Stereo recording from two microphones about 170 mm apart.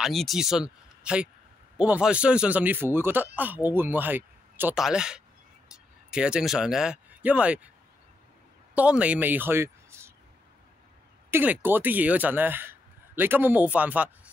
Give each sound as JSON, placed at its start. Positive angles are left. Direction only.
{"t": 0.0, "sound": "speech", "side_deg": 0}
{"t": 8.7, "sound": "a woman's voice", "side_deg": -5}
{"t": 11.2, "sound": "speech", "side_deg": -10}